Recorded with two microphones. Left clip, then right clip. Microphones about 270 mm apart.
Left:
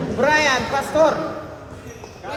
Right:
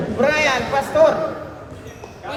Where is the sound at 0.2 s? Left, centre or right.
Left.